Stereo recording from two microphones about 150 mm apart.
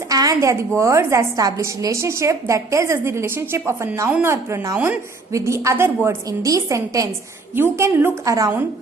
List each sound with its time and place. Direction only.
0.1 s a woman's voice: 25° right (ahead or behind)